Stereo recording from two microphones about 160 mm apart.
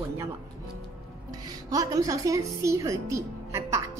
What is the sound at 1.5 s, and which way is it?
A woman's voice, 25° right (ahead or behind).